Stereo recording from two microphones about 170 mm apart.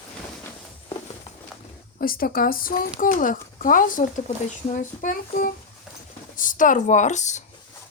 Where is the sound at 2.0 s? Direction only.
60° left (ahead or behind).